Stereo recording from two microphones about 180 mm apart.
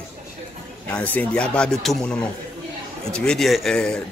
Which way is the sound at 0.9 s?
10° left (ahead or behind).